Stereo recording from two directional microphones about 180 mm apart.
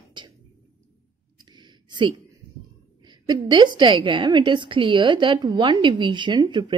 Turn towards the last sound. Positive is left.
turn(degrees=-25)  # may be behind; listen again after turning